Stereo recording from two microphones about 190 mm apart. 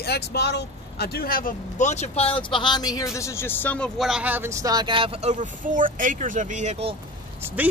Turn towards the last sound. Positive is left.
turn(degrees=-10)  # may be behind; listen again after turning